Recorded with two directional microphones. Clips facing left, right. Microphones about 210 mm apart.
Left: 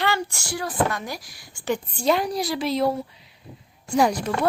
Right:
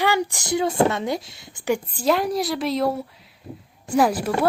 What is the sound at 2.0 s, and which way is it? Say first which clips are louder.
A woman's voice: right 1 dB; centre (ahead or behind).